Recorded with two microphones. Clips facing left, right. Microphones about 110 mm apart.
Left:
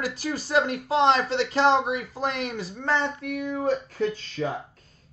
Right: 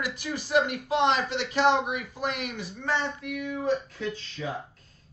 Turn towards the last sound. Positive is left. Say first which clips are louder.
# left 4 dB
turn(degrees=50)  # may be behind; listen again after turning